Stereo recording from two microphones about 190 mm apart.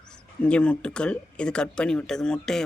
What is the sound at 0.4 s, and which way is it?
Speech, 5° left (ahead or behind).